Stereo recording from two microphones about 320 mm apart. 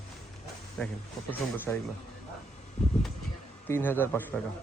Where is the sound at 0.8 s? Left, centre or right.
Centre.